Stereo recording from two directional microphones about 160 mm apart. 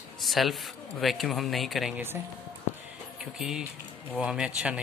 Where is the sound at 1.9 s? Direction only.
15° right (ahead or behind).